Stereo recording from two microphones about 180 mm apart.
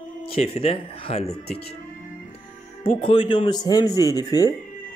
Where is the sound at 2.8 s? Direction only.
30° left (ahead or behind).